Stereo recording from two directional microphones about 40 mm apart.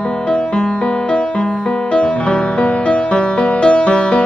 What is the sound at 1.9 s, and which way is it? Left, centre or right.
Music, left.